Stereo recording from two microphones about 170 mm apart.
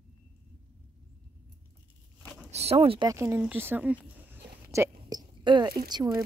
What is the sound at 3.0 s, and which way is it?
Speech, 15° right (ahead or behind).